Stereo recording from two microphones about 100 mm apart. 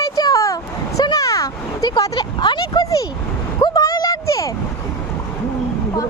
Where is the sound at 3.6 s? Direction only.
40° left (ahead or behind).